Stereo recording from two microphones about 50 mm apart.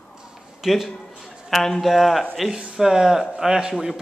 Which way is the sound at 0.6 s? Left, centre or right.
Centre.